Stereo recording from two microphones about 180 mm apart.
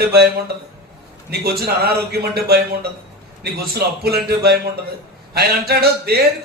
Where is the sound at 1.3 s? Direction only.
60° right (ahead or behind).